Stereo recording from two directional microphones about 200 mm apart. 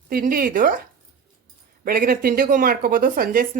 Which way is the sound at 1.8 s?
45° right (ahead or behind).